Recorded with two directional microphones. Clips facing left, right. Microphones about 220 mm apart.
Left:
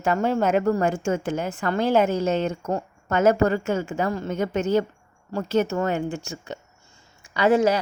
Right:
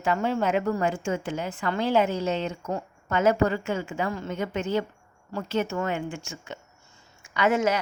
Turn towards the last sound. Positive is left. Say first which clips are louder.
# left 4 dB
turn(degrees=35)  # may be behind; listen again after turning